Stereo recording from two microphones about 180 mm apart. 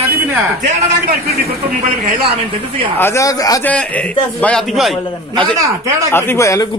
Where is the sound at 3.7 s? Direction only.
10° left (ahead or behind).